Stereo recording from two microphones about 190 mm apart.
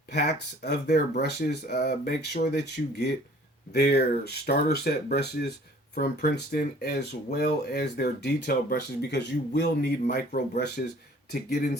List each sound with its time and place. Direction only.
0.1 s speech: 60° left (ahead or behind)